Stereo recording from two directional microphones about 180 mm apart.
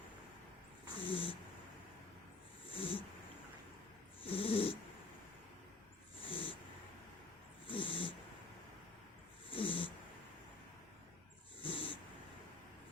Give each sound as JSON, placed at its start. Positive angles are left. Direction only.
{"t": 0.9, "sound": "cat", "side_deg": 30}
{"t": 2.6, "sound": "cat", "side_deg": 30}
{"t": 4.2, "sound": "cat", "side_deg": 30}
{"t": 6.2, "sound": "dog", "side_deg": 30}
{"t": 7.7, "sound": "cat", "side_deg": 30}
{"t": 9.5, "sound": "cat", "side_deg": 30}
{"t": 11.6, "sound": "dog", "side_deg": 30}